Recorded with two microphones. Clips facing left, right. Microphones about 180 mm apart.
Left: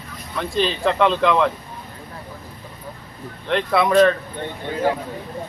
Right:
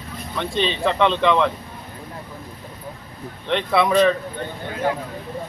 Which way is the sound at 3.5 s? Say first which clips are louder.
Left 1 dB; centre (ahead or behind).